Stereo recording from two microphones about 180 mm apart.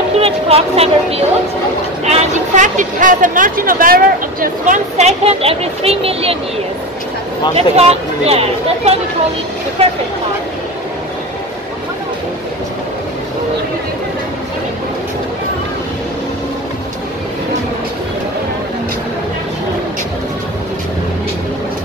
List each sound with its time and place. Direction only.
0.2 s a woman's voice: 35° right (ahead or behind)
7.5 s speech: 35° right (ahead or behind)